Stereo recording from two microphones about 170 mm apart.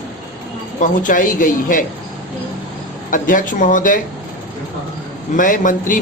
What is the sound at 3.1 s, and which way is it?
Speech, 50° left (ahead or behind).